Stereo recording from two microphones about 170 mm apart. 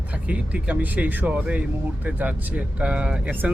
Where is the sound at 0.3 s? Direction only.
10° right (ahead or behind).